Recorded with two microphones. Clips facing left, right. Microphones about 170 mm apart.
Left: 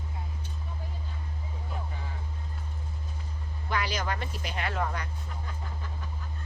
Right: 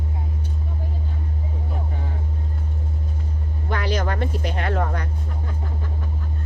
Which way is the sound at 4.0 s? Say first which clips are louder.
Right 7 dB; 60° right (ahead or behind).